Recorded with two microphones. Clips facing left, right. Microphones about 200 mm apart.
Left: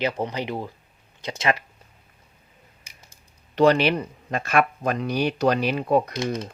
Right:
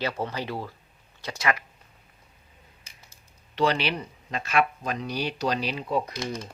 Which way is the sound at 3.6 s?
45° left (ahead or behind).